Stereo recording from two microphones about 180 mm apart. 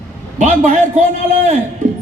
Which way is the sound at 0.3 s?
45° right (ahead or behind).